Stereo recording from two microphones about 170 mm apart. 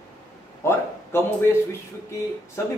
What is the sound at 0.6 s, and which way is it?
A man's voice, 15° left (ahead or behind).